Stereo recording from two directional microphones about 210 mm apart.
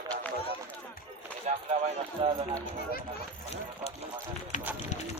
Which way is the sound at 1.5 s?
35° right (ahead or behind).